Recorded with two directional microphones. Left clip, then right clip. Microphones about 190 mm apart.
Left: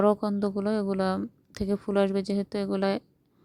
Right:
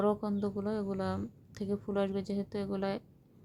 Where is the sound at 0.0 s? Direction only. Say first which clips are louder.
Left 7 dB; 35° left (ahead or behind).